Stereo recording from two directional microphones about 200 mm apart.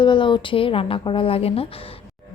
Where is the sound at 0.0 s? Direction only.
25° left (ahead or behind).